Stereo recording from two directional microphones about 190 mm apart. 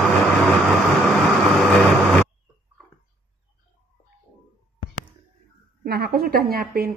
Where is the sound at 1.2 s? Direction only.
Centre (ahead or behind).